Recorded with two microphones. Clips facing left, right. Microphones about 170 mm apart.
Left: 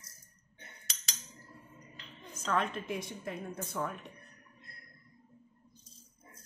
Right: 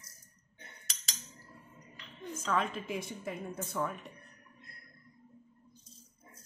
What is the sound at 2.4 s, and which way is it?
Speech, 5° right (ahead or behind).